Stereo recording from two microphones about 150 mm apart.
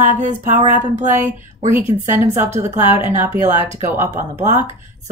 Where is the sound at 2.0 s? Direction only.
20° right (ahead or behind).